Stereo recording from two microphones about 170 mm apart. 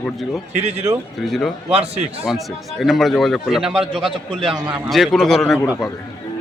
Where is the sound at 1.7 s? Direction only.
35° right (ahead or behind).